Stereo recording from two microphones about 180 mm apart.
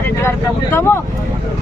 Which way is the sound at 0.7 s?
15° left (ahead or behind).